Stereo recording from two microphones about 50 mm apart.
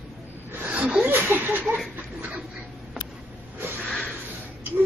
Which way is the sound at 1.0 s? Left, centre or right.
Right.